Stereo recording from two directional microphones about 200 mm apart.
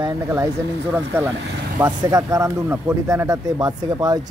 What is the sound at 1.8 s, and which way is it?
Speech, 15° right (ahead or behind).